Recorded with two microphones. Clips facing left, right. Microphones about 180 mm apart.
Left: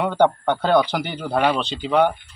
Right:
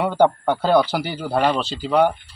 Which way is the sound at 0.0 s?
5° right (ahead or behind).